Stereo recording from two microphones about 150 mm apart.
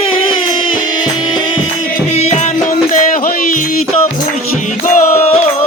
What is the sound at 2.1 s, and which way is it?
Music, 45° left (ahead or behind).